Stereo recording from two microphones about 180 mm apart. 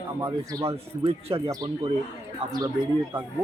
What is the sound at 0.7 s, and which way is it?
Speech, 30° right (ahead or behind).